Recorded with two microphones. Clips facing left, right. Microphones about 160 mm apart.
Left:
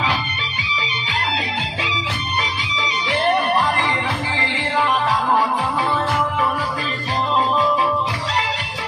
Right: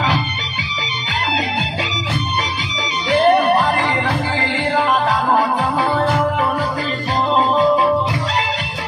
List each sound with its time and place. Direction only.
3.1 s music: 40° right (ahead or behind)
4.7 s music: 35° right (ahead or behind)
7.3 s music: 40° right (ahead or behind)